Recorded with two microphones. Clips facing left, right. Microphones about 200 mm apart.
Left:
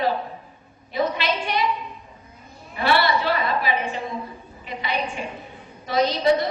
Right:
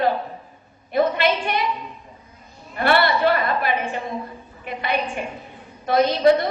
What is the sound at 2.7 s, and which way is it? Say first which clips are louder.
A woman's voice: right 2 dB; 55° right (ahead or behind).